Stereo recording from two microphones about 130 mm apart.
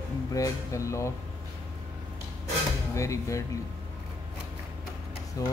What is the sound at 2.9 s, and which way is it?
Speech, 25° left (ahead or behind).